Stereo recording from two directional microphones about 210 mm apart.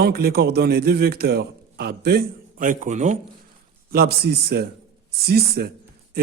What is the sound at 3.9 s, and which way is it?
A man's voice, 50° right (ahead or behind).